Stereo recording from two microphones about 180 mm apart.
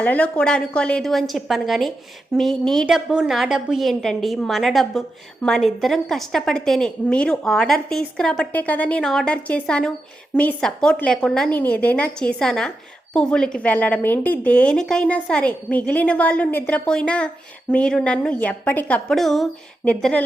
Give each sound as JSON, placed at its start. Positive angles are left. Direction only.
{"t": 0.0, "sound": "a woman's voice", "side_deg": 10}